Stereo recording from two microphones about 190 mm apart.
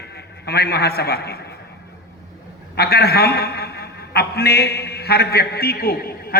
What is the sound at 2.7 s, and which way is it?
A man's voice, 55° left (ahead or behind).